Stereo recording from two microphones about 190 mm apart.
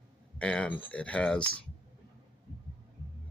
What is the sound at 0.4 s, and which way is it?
Speech, 5° left (ahead or behind).